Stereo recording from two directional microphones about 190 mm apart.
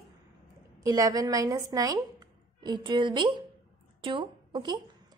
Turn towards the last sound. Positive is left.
turn(degrees=-25)  # may be behind; listen again after turning